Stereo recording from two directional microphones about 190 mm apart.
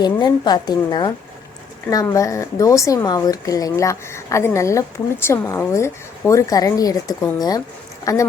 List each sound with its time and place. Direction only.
0.0 s speech: 20° left (ahead or behind)